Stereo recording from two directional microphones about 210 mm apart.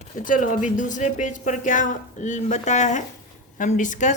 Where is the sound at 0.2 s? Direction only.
40° left (ahead or behind).